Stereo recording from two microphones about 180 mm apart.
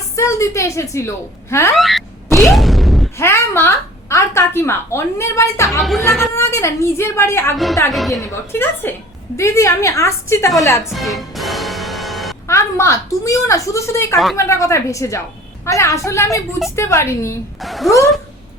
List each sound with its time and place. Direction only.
0.2 s a woman's voice: 15° left (ahead or behind)
1.7 s a sound: centre (ahead or behind)
3.2 s a woman's voice: 15° left (ahead or behind)
5.8 s speech: centre (ahead or behind)
6.3 s a woman's voice: 15° left (ahead or behind)
7.5 s speech: centre (ahead or behind)
8.1 s a woman's voice: 15° left (ahead or behind)
10.9 s music: centre (ahead or behind)
12.5 s a woman's voice: 15° left (ahead or behind)
17.6 s speech: centre (ahead or behind)